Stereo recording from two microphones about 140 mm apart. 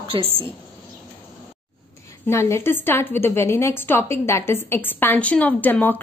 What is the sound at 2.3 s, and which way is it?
A woman's voice, 20° left (ahead or behind).